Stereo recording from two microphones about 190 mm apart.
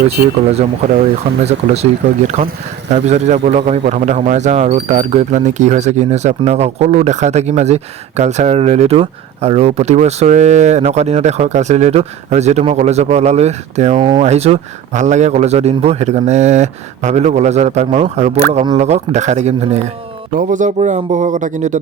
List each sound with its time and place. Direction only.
1.5 s speech: 35° right (ahead or behind)